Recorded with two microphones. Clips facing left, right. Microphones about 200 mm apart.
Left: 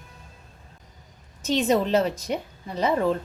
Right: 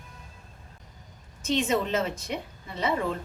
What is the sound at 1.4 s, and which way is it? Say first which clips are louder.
A woman's voice: left 4 dB; 40° left (ahead or behind).